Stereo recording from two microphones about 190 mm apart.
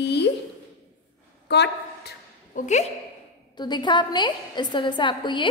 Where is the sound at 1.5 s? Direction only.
60° left (ahead or behind).